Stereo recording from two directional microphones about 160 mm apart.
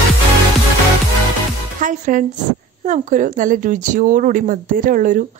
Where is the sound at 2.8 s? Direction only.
50° right (ahead or behind).